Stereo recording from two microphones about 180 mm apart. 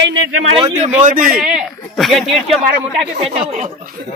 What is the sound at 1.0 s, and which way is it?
Speech, 50° right (ahead or behind).